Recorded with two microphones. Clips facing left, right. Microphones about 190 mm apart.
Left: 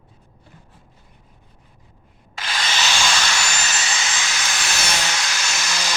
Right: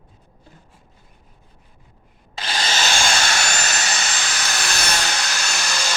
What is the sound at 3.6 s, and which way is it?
Helicopter, 55° right (ahead or behind).